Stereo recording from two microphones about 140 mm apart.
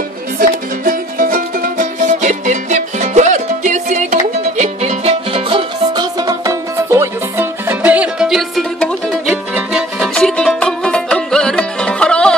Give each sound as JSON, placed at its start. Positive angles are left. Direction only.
{"t": 0.4, "sound": "music", "side_deg": -85}
{"t": 9.5, "sound": "music", "side_deg": -5}